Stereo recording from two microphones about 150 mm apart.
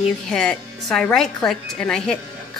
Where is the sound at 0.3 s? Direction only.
5° left (ahead or behind).